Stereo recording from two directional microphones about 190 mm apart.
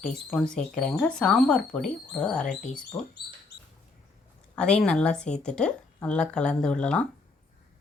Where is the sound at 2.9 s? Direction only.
20° left (ahead or behind).